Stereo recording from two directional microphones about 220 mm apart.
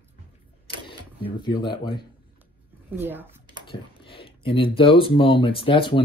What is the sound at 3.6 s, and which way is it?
Speech, 25° left (ahead or behind).